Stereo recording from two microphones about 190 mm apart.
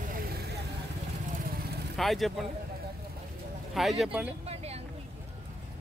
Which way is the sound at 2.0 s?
Centre (ahead or behind).